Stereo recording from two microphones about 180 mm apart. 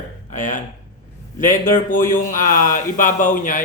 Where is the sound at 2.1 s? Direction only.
50° left (ahead or behind).